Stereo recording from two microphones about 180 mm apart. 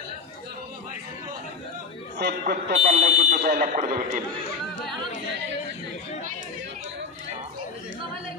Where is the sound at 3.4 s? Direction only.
50° right (ahead or behind).